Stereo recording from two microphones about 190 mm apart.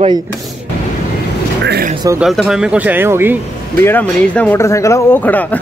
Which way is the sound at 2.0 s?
5° right (ahead or behind).